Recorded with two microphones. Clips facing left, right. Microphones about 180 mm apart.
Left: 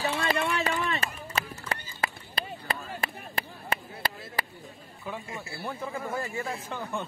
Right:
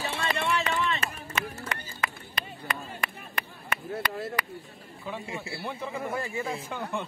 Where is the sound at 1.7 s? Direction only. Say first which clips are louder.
Left 1 dB; 30° left (ahead or behind).